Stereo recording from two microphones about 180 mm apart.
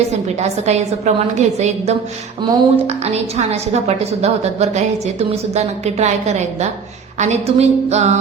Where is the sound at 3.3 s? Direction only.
35° right (ahead or behind).